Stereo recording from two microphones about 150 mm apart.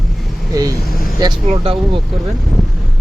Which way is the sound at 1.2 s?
25° right (ahead or behind).